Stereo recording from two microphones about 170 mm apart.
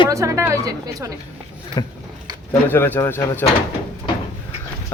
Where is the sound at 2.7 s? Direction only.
15° left (ahead or behind).